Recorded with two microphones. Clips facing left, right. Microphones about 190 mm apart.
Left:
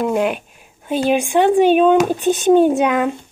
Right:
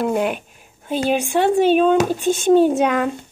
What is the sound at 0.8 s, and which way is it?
Speech, 15° left (ahead or behind).